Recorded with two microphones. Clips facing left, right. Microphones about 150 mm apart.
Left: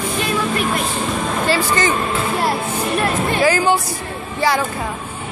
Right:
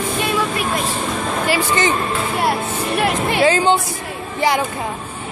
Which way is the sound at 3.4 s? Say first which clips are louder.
Right 1 dB; 25° right (ahead or behind).